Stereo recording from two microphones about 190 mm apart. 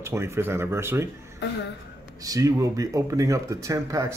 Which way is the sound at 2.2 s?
15° right (ahead or behind).